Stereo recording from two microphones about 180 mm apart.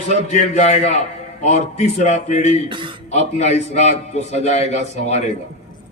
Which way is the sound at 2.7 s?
25° right (ahead or behind).